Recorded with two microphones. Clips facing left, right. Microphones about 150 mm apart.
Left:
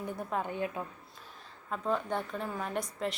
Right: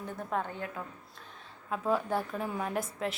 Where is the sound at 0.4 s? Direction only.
20° left (ahead or behind).